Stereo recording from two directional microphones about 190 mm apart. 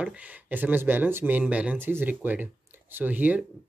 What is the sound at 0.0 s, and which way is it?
Speech, 5° right (ahead or behind).